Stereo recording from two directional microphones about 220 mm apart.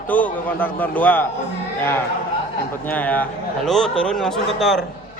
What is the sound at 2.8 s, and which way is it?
A man's voice, 5° left (ahead or behind).